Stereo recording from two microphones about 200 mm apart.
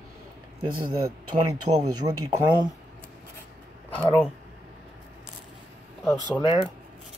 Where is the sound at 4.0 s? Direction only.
10° left (ahead or behind).